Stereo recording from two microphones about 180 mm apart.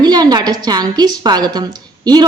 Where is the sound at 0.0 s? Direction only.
20° right (ahead or behind).